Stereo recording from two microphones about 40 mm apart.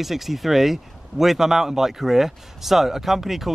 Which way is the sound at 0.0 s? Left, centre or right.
Centre.